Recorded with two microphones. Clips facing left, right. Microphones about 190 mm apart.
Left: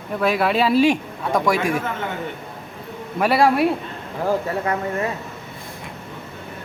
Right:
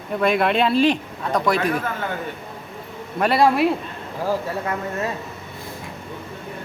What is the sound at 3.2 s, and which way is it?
Speech, 5° left (ahead or behind).